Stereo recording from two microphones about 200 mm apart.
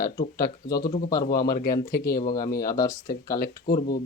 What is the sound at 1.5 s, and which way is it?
Speech, 50° left (ahead or behind).